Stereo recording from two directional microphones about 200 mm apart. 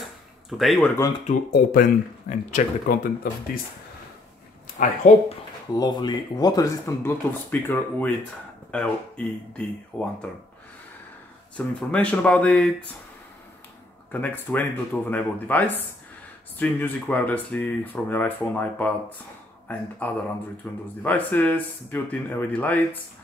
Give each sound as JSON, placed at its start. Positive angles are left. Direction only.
{"t": 0.5, "sound": "speech", "side_deg": 0}
{"t": 1.5, "sound": "speech", "side_deg": 45}
{"t": 4.7, "sound": "speech", "side_deg": 35}
{"t": 5.7, "sound": "speech", "side_deg": 20}
{"t": 11.5, "sound": "speech", "side_deg": 5}
{"t": 14.2, "sound": "speech", "side_deg": 10}